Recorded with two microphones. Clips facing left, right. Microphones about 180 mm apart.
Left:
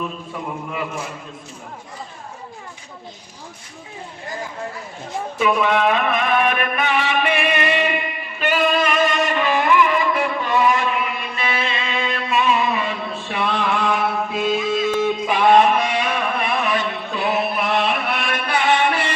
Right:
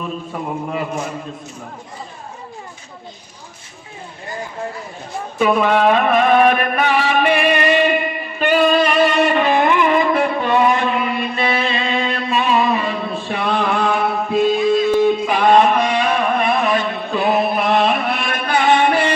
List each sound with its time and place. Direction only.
0.3 s a man's voice: 40° right (ahead or behind)
0.7 s music: 40° right (ahead or behind)
5.4 s music: 40° right (ahead or behind)
10.5 s a sound: 30° right (ahead or behind)